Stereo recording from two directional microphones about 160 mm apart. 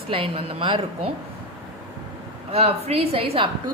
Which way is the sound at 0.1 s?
35° right (ahead or behind).